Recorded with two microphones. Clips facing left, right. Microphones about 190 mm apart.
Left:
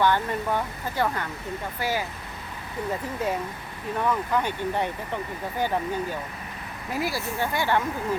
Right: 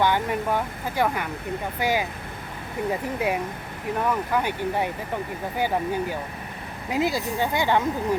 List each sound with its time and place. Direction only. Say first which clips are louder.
0.0 s speech: right 1 dB; 15° right (ahead or behind)